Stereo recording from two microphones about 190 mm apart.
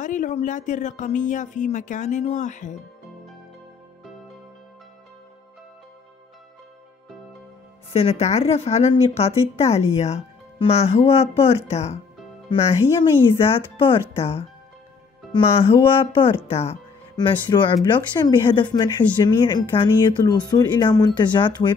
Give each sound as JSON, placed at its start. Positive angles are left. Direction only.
{"t": 0.0, "sound": "a woman's voice", "side_deg": 40}
{"t": 7.9, "sound": "a woman's voice", "side_deg": 30}